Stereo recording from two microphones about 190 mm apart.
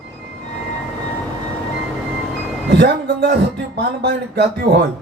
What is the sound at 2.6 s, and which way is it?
Speech, 65° right (ahead or behind).